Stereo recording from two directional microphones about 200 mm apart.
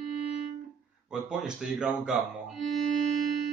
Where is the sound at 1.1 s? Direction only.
5° right (ahead or behind).